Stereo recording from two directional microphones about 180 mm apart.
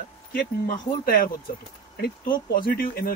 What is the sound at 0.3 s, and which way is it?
Speech, 50° left (ahead or behind).